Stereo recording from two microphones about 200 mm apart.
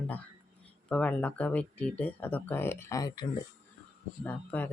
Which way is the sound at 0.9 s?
5° left (ahead or behind).